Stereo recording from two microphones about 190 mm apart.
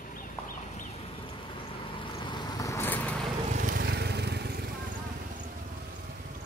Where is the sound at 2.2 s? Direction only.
20° left (ahead or behind).